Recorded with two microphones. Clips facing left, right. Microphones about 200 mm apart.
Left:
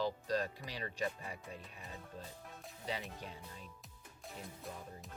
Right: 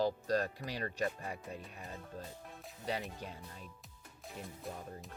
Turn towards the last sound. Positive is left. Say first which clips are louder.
# right 3 dB
turn(degrees=0)  # may be behind; listen again after turning